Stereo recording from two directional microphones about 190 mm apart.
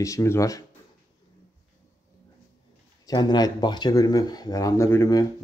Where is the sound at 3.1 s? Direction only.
20° left (ahead or behind).